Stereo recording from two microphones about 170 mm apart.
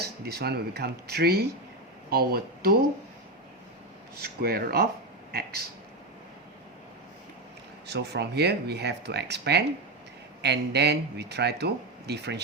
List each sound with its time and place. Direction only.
0.0 s speech: 70° right (ahead or behind)
4.2 s speech: 65° right (ahead or behind)
7.9 s speech: 80° right